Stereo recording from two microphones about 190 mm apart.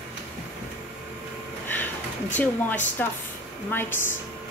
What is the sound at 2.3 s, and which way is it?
A woman's voice, 10° left (ahead or behind).